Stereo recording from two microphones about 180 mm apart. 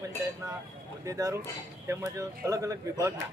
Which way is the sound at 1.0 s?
20° right (ahead or behind).